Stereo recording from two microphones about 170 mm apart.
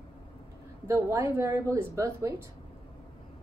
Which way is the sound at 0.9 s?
15° right (ahead or behind).